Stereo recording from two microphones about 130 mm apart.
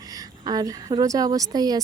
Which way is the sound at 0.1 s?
30° right (ahead or behind).